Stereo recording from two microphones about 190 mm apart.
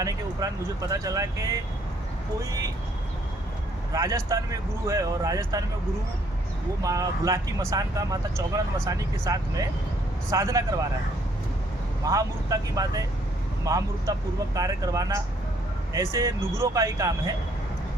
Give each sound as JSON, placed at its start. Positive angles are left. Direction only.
{"t": 0.0, "sound": "speech", "side_deg": -20}
{"t": 3.9, "sound": "speech", "side_deg": -15}
{"t": 6.8, "sound": "speech", "side_deg": -20}
{"t": 12.0, "sound": "speech", "side_deg": -20}